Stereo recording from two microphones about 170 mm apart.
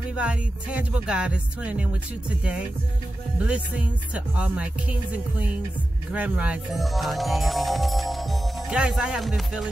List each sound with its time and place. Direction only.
0.1 s speech: 5° right (ahead or behind)
6.1 s speech: 5° right (ahead or behind)